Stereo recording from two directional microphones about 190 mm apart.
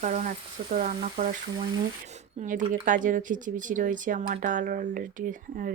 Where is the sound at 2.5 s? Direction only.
45° right (ahead or behind).